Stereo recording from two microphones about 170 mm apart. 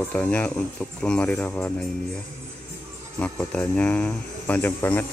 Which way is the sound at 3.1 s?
10° left (ahead or behind).